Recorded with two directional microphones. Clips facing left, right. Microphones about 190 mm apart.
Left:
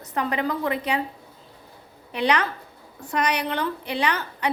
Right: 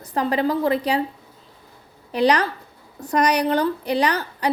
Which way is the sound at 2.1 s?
35° right (ahead or behind).